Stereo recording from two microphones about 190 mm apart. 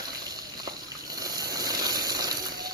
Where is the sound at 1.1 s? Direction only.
20° right (ahead or behind).